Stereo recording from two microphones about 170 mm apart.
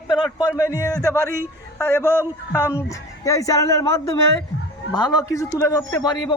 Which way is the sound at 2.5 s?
15° left (ahead or behind).